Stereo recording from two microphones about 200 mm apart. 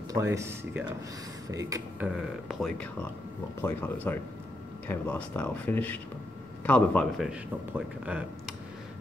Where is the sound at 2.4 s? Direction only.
5° left (ahead or behind).